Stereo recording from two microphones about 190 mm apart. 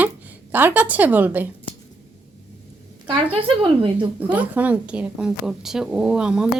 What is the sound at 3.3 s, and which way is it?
Speech, 30° right (ahead or behind).